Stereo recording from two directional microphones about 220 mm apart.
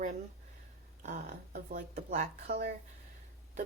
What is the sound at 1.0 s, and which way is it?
A woman's voice, 40° right (ahead or behind).